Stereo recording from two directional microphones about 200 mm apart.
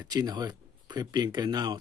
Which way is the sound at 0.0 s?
20° right (ahead or behind).